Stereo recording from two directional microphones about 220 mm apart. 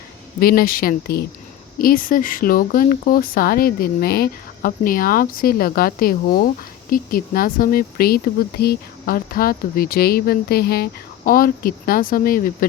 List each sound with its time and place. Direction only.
0.3 s speech: 40° left (ahead or behind)